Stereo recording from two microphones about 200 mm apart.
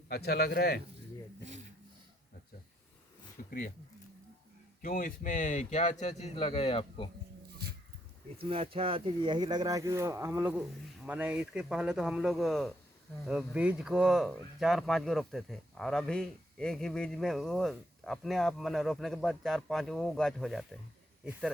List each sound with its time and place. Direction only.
0.1 s a man's voice: 50° left (ahead or behind)
3.4 s speech: 45° left (ahead or behind)
4.8 s speech: 45° left (ahead or behind); by 7.1 s 25° left (ahead or behind)
8.4 s speech: 30° right (ahead or behind); by 20.7 s centre (ahead or behind)